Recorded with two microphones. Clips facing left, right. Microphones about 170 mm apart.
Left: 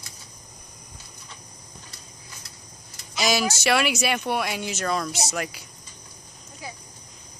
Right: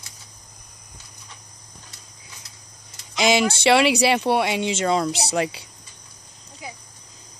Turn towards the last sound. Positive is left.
turn(degrees=-25)  # may be behind; listen again after turning